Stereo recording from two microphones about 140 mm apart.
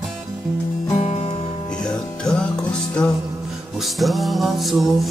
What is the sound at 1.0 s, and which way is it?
Music, 45° left (ahead or behind).